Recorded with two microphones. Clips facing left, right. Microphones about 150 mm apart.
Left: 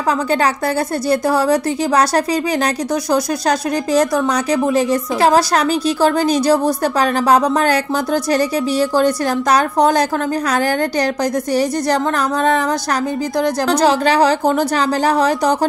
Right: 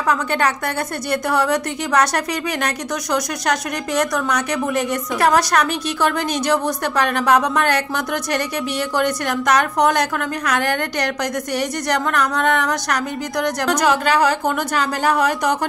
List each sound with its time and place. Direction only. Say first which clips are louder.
0.1 s a woman's voice: left 3 dB; 35° left (ahead or behind)